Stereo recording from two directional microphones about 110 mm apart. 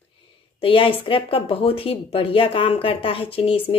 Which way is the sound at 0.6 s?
55° left (ahead or behind).